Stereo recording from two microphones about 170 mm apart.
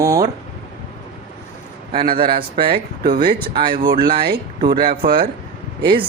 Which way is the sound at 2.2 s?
65° right (ahead or behind).